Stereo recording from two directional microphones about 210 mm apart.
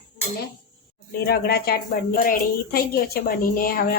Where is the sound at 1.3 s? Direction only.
50° left (ahead or behind).